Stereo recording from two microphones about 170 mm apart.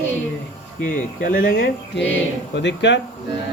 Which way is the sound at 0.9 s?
55° left (ahead or behind).